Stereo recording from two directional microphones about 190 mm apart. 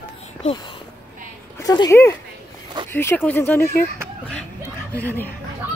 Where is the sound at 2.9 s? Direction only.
10° left (ahead or behind).